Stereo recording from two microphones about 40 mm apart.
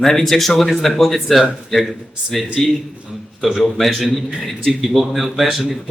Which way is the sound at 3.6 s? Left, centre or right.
Centre.